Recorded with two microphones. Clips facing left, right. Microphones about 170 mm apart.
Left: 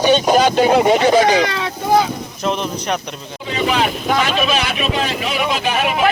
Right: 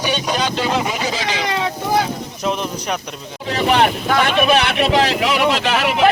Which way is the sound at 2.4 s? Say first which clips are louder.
Left 2 dB; 10° right (ahead or behind).